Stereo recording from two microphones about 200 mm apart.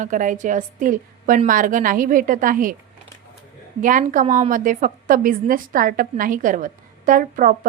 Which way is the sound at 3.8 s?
40° right (ahead or behind).